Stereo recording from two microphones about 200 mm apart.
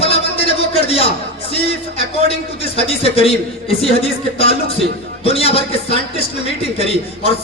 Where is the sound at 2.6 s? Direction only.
30° left (ahead or behind).